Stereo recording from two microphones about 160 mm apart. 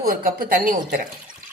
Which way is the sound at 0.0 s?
65° right (ahead or behind).